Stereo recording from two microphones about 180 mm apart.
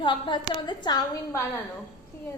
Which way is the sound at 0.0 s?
25° left (ahead or behind).